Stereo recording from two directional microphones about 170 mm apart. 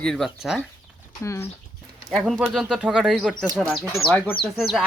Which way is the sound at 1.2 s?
15° left (ahead or behind).